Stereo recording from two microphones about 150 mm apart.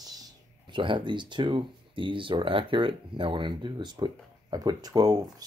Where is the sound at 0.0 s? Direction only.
25° right (ahead or behind).